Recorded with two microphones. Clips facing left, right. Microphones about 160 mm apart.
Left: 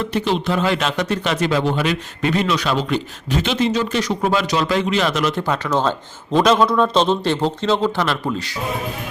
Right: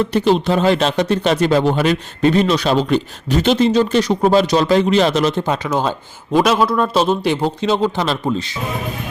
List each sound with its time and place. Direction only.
0.1 s speech: 35° right (ahead or behind)
5.4 s a man's voice: 15° right (ahead or behind)